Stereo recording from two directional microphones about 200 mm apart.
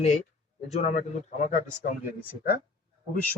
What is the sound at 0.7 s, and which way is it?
Speech, 35° left (ahead or behind).